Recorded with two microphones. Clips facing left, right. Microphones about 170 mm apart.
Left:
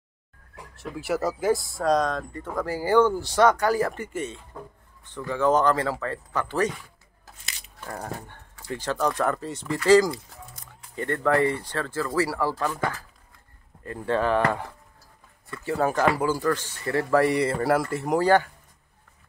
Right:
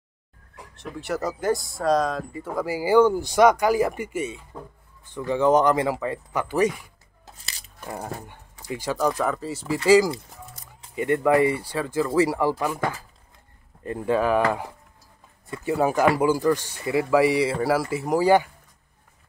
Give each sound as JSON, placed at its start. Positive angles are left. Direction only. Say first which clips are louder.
{"t": 0.7, "sound": "speech", "louder": "left 1 dB", "side_deg": 5}
{"t": 7.3, "sound": "biting", "louder": "left 1 dB", "side_deg": -35}
{"t": 7.8, "sound": "speech", "louder": "right 1 dB", "side_deg": -10}